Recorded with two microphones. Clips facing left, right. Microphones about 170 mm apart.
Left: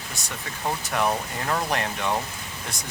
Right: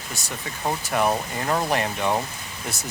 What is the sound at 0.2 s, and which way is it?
Speech, centre (ahead or behind).